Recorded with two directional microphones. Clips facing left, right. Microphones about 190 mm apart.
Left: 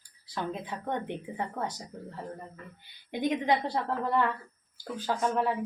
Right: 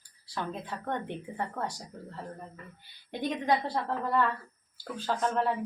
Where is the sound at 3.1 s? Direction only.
15° left (ahead or behind).